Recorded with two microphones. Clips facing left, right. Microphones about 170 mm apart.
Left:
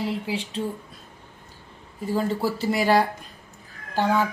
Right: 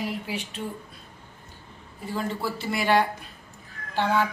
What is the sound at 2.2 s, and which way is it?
A woman's voice, 40° left (ahead or behind).